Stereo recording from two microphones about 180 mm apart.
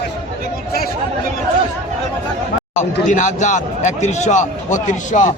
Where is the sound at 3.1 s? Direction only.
45° left (ahead or behind).